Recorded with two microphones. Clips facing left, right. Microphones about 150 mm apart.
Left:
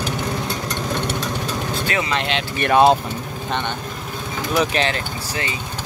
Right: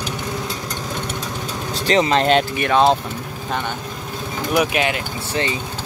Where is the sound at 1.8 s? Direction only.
35° right (ahead or behind).